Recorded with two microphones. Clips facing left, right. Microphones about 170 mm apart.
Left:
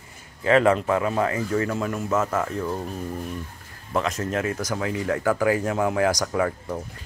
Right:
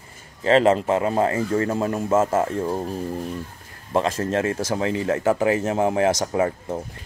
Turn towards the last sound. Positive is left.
turn(degrees=-25)  # may be behind; listen again after turning